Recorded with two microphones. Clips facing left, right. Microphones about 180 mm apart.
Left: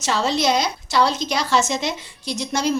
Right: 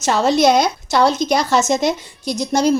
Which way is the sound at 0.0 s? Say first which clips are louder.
Right 6 dB; 50° right (ahead or behind).